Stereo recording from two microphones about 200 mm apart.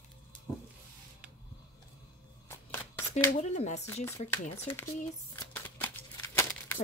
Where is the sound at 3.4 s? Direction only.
35° left (ahead or behind).